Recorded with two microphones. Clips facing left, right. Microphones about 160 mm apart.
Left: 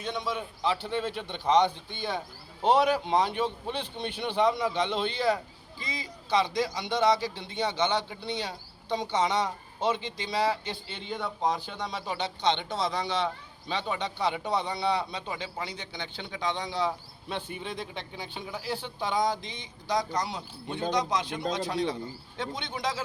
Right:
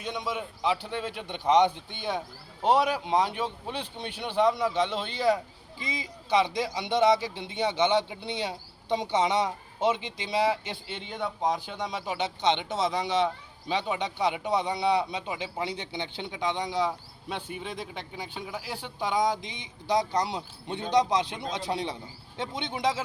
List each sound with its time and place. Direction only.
0.0 s a man's voice: 15° right (ahead or behind)
2.6 s a man's voice: 10° right (ahead or behind)
5.8 s a man's voice: 20° right (ahead or behind)
15.6 s a man's voice: 30° right (ahead or behind)
19.9 s a man's voice: 30° right (ahead or behind)